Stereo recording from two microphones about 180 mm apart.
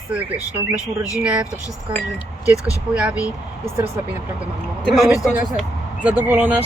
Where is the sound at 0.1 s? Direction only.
5° right (ahead or behind).